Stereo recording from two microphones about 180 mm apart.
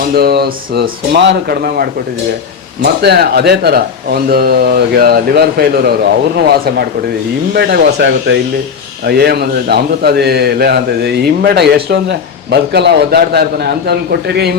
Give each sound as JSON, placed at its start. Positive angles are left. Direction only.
{"t": 0.1, "sound": "speech", "side_deg": -60}
{"t": 7.5, "sound": "speech", "side_deg": -65}
{"t": 9.0, "sound": "speech", "side_deg": -60}